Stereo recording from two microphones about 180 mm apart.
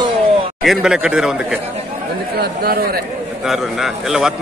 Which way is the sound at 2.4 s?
60° right (ahead or behind).